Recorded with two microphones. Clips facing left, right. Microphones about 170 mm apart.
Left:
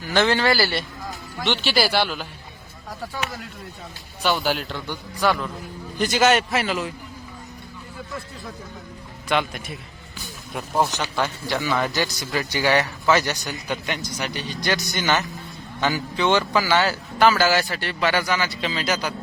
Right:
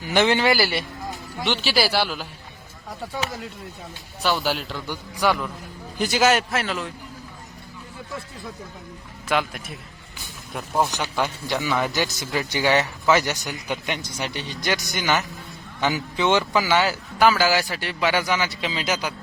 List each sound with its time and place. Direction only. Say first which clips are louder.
0.1 s a man's voice: right 1 dB; 15° right (ahead or behind)
4.2 s a man's voice: left 1 dB; centre (ahead or behind)
5.1 s a man's voice: even; 15° right (ahead or behind); by 6.9 s 5° left (ahead or behind)
9.3 s a man's voice: left 1 dB; centre (ahead or behind)
11.2 s speech: even; 15° right (ahead or behind)